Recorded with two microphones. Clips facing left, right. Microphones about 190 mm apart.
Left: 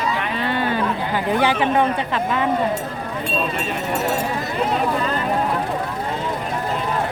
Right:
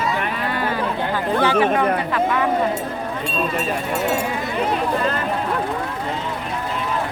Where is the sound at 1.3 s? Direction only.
20° left (ahead or behind).